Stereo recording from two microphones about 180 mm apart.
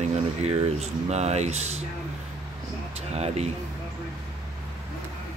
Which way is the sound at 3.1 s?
35° right (ahead or behind).